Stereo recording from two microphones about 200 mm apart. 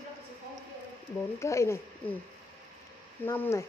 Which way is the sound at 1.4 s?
15° left (ahead or behind).